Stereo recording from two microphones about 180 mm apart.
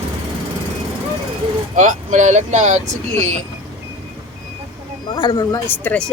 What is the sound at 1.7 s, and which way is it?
Speech, 45° right (ahead or behind).